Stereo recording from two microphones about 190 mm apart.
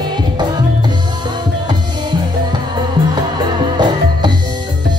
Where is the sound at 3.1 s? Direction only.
25° right (ahead or behind).